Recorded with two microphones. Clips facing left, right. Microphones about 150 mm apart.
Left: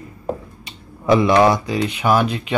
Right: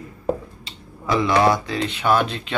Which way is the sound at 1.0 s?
20° left (ahead or behind).